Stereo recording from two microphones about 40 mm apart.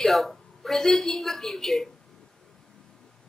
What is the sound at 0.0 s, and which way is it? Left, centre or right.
A woman's voice, centre.